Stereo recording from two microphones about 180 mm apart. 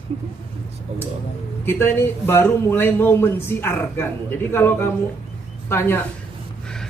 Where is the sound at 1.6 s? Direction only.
15° left (ahead or behind).